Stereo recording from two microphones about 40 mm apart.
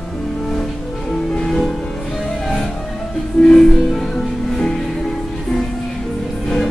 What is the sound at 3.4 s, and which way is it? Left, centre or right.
Music, centre.